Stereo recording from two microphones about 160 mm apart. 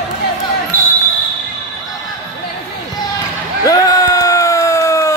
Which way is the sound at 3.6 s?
20° left (ahead or behind).